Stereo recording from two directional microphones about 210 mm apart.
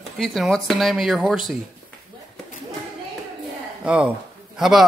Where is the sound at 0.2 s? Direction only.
Centre (ahead or behind).